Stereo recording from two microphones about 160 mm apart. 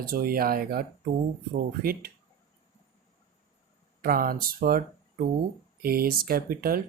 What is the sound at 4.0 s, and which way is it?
A woman's voice, 65° right (ahead or behind).